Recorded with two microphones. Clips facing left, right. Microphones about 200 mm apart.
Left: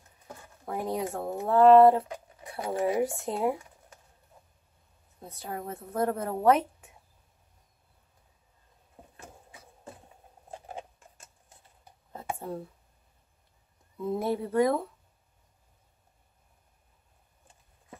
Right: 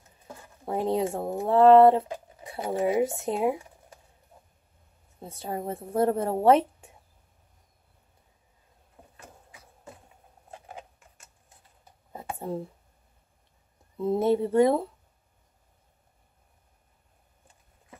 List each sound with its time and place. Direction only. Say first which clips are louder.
0.7 s speech: right 5 dB; 25° right (ahead or behind)
5.2 s speech: right 4 dB; 25° right (ahead or behind)
10.7 s tick-tock: left 3 dB; 30° left (ahead or behind)
12.4 s speech: right 8 dB; 20° right (ahead or behind)
13.9 s speech: right 6 dB; 25° right (ahead or behind)